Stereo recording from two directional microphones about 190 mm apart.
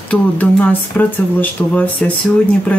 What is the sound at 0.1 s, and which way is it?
Speech, 5° left (ahead or behind).